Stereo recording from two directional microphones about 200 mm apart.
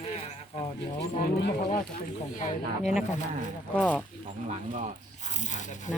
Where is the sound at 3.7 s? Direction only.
5° left (ahead or behind).